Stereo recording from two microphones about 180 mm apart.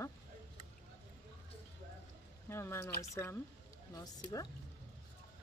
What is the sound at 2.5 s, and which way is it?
Speech, 15° left (ahead or behind).